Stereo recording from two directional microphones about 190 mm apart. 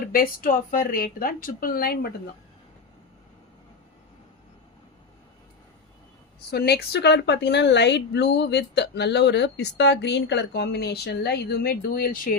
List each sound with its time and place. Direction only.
0.1 s speech: 50° left (ahead or behind)
6.5 s a woman's voice: 55° left (ahead or behind)